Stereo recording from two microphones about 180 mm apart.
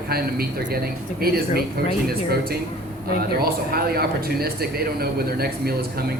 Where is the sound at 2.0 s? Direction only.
60° right (ahead or behind).